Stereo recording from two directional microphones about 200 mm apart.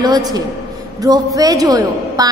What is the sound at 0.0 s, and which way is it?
A woman's voice, 20° right (ahead or behind).